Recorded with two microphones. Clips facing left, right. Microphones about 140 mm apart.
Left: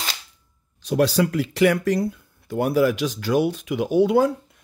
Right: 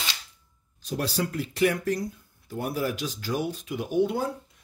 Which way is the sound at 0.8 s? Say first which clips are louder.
Left 10 dB; 85° left.